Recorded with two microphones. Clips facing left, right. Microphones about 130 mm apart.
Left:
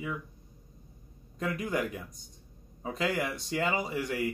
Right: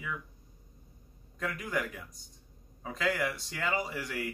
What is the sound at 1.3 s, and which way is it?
Speech, 20° left (ahead or behind).